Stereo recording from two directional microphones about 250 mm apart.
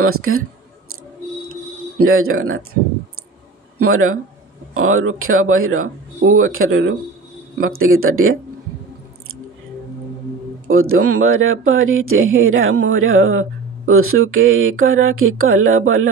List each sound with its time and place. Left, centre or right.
0.0 s speech: right
2.0 s a man's voice: right
10.7 s speech: right